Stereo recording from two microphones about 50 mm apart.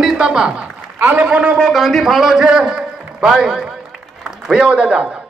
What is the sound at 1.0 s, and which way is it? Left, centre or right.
Speech, right.